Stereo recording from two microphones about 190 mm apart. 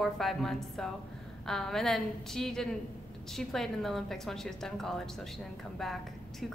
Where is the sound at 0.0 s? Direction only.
Centre (ahead or behind).